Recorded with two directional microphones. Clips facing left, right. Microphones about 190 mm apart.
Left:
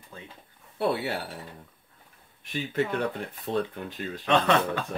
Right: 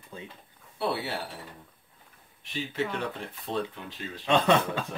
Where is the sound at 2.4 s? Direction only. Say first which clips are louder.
Left 3 dB; 50° left (ahead or behind).